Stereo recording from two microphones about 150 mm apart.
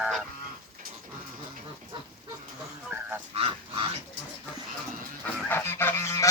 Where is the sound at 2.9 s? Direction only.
15° right (ahead or behind).